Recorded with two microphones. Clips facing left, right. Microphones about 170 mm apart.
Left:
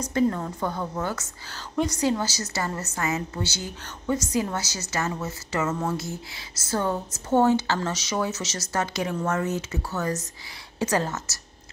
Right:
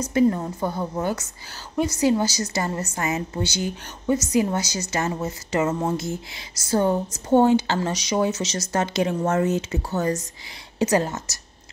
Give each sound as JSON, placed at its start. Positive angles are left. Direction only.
{"t": 0.1, "sound": "a woman's voice", "side_deg": -15}